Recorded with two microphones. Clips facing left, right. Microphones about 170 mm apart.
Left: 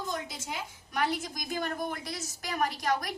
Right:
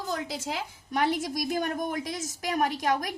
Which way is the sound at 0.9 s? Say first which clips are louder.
Right 4 dB; 45° right (ahead or behind).